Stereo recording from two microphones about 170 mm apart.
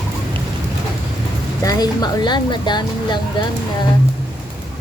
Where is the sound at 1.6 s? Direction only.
25° left (ahead or behind).